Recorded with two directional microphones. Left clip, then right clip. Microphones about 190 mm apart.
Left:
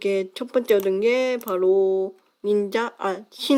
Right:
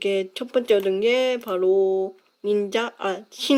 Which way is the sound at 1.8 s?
10° right (ahead or behind).